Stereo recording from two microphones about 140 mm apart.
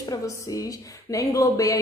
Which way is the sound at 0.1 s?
25° left (ahead or behind).